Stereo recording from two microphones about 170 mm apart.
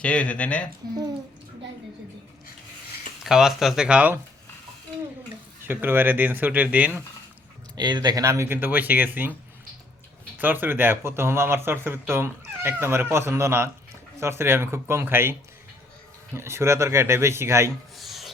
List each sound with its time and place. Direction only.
0.0 s speech: 5° left (ahead or behind)
3.2 s speech: 5° right (ahead or behind)
5.6 s speech: 10° right (ahead or behind)
7.8 s speech: 25° right (ahead or behind)
10.3 s speech: 10° right (ahead or behind)
17.9 s music: centre (ahead or behind)